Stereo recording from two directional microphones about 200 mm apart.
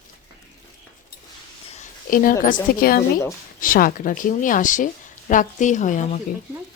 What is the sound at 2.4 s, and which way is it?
A woman's voice, 45° left (ahead or behind).